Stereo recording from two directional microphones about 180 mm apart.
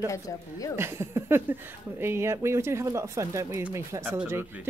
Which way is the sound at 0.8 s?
15° right (ahead or behind).